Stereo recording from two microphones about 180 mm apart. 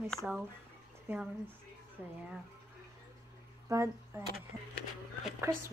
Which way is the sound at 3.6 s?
15° right (ahead or behind).